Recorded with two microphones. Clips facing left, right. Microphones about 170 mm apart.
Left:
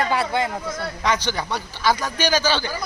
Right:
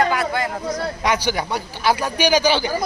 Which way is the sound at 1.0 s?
10° right (ahead or behind).